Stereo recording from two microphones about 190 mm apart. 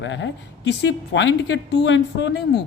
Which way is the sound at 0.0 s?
70° left (ahead or behind).